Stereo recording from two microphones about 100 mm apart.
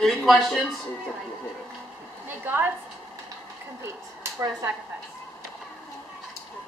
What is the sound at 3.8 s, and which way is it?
Speech, 25° right (ahead or behind).